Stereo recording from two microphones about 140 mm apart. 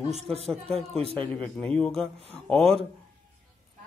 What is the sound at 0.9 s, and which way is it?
Speech, 45° right (ahead or behind).